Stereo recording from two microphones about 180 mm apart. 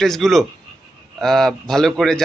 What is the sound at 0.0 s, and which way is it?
A man's voice, centre (ahead or behind).